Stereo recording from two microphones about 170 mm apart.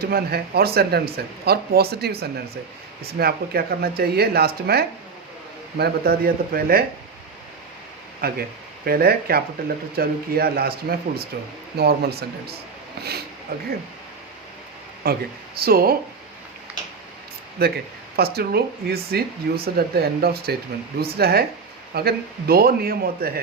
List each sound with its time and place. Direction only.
0.0 s speech: 65° right (ahead or behind)
8.2 s speech: 65° right (ahead or behind)
15.1 s speech: 65° right (ahead or behind)
17.6 s speech: 65° right (ahead or behind)